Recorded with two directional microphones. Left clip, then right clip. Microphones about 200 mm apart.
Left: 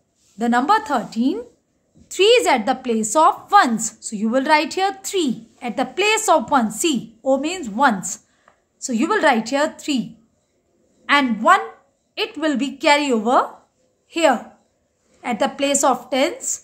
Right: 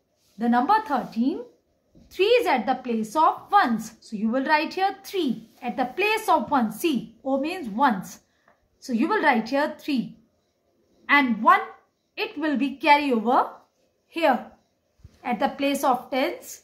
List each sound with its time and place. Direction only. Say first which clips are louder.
0.4 s a woman's voice: left 4 dB; 35° left (ahead or behind)
11.1 s a woman's voice: left 3 dB; 35° left (ahead or behind)